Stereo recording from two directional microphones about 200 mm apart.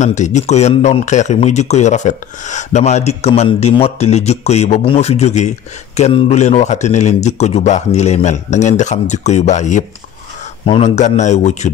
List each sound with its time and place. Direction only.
0.0 s speech: 35° left (ahead or behind)